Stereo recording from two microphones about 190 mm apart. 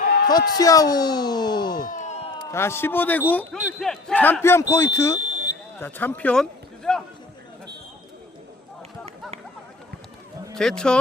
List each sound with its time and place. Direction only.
0.3 s speech: 20° left (ahead or behind)
1.8 s a sound: 40° left (ahead or behind)
2.5 s speech: 15° left (ahead or behind)
10.5 s speech: centre (ahead or behind)